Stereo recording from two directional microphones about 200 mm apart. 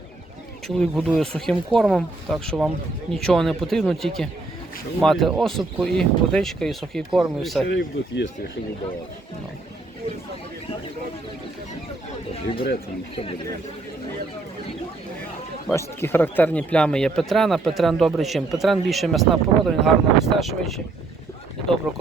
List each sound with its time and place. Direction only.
0.7 s speech: centre (ahead or behind)
7.7 s speech: 65° left (ahead or behind)
12.3 s speech: 30° left (ahead or behind)
15.7 s speech: 15° left (ahead or behind)